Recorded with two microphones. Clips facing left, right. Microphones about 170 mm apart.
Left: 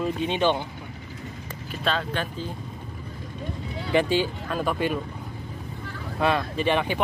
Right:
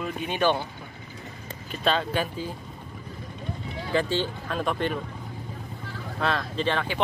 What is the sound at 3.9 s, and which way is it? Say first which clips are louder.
Speech: left 3 dB; 15° left (ahead or behind).